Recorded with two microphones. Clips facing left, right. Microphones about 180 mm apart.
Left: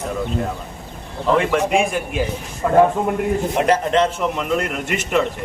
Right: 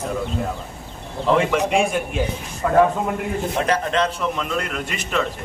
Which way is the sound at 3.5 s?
20° left (ahead or behind).